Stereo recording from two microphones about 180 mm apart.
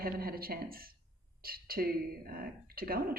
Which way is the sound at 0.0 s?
55° right (ahead or behind).